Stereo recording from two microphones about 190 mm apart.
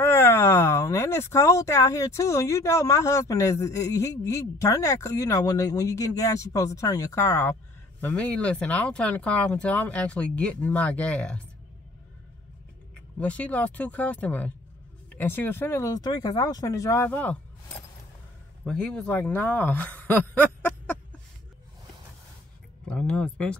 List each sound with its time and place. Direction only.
0.0 s speech: 10° left (ahead or behind)
13.2 s speech: 5° left (ahead or behind)
18.6 s speech: 5° left (ahead or behind)
22.8 s speech: 5° left (ahead or behind)